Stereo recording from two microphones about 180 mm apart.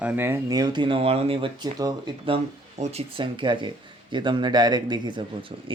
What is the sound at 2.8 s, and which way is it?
Speech, 35° right (ahead or behind).